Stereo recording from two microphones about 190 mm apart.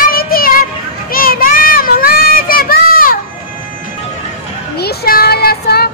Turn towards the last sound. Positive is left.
turn(degrees=55)  # may be behind; listen again after turning